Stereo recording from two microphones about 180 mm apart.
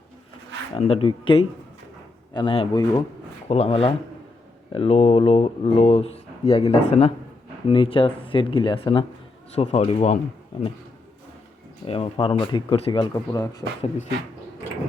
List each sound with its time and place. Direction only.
0.8 s speech: 35° left (ahead or behind)
11.9 s speech: 30° left (ahead or behind)